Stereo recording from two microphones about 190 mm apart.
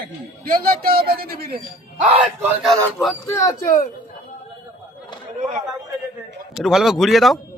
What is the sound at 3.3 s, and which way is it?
Speech, 15° left (ahead or behind).